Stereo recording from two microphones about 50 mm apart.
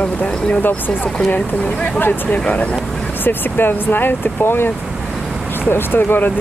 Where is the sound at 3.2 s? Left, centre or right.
Left.